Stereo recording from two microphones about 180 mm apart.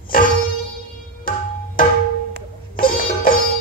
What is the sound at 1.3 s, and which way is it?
Tabla, 50° left (ahead or behind).